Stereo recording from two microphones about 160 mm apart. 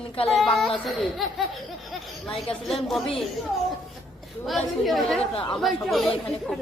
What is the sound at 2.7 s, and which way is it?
Speech, centre (ahead or behind).